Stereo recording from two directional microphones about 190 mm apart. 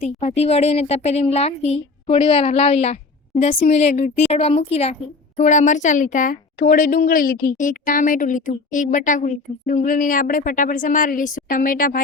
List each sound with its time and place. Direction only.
0.0 s a woman's voice: 35° left (ahead or behind)